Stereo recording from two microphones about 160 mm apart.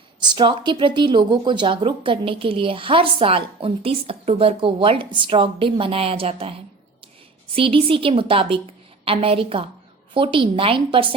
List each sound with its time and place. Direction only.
0.2 s speech: 25° right (ahead or behind)